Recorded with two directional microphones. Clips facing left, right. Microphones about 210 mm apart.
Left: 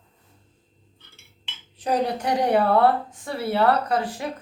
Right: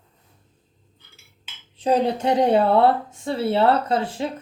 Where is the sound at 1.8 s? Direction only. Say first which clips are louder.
Right 4 dB; 25° right (ahead or behind).